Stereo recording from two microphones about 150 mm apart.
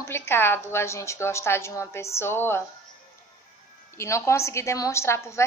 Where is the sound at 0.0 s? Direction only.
15° left (ahead or behind).